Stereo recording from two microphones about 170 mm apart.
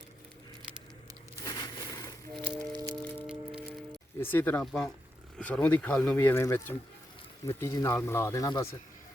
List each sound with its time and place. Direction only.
1.5 s crushing: 20° left (ahead or behind)
2.6 s music: 20° right (ahead or behind)
3.0 s a sound: 10° left (ahead or behind)
4.2 s speech: 10° left (ahead or behind)